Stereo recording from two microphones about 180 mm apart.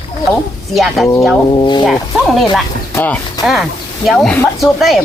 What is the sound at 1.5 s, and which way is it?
Speech, 25° left (ahead or behind).